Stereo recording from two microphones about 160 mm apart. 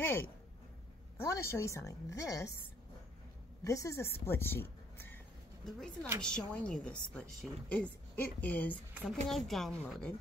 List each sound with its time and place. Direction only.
0.0 s a woman's voice: 15° left (ahead or behind)
3.6 s speech: 20° left (ahead or behind)
5.6 s a woman's voice: 5° left (ahead or behind)